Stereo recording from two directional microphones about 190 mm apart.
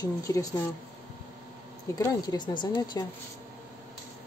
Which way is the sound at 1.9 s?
20° left (ahead or behind).